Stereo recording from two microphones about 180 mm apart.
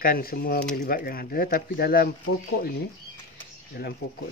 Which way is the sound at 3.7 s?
55° left (ahead or behind).